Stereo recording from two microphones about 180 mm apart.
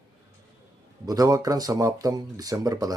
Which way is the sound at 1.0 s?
20° right (ahead or behind).